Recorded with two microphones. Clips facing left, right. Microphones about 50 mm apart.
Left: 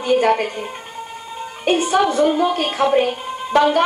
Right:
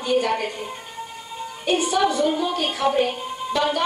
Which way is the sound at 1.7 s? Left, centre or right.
Left.